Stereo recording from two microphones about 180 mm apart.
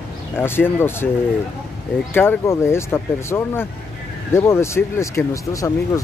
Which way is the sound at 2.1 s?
10° left (ahead or behind).